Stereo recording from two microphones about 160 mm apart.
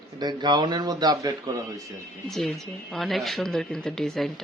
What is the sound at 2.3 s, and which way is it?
Speech, 5° left (ahead or behind).